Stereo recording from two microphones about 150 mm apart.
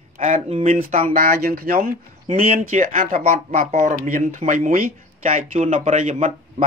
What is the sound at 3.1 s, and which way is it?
Speech, 45° right (ahead or behind).